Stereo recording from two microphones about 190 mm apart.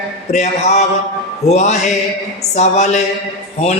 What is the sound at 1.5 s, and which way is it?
Speech, 35° left (ahead or behind).